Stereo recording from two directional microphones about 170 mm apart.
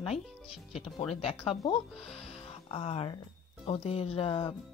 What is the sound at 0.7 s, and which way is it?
Speech, centre (ahead or behind).